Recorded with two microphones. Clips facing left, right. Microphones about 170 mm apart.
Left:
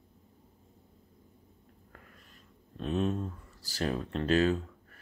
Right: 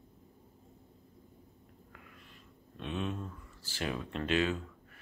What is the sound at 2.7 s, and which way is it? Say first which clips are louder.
Speech: left 6 dB; 35° left (ahead or behind).